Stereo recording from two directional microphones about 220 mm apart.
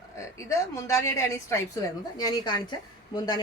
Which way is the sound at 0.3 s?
15° left (ahead or behind).